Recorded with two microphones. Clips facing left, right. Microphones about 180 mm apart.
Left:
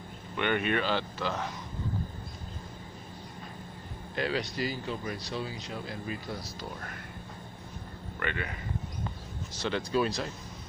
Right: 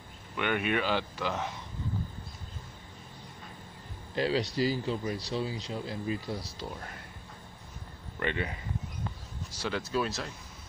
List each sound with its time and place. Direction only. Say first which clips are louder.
0.4 s speech: left 1 dB; 5° right (ahead or behind)
4.1 s speech: right 3 dB; 30° right (ahead or behind)
8.2 s speech: right 3 dB; 25° right (ahead or behind)
9.5 s speech: left 2 dB; 5° right (ahead or behind)